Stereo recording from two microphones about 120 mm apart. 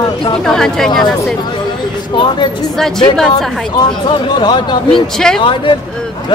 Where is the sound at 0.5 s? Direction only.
5° left (ahead or behind).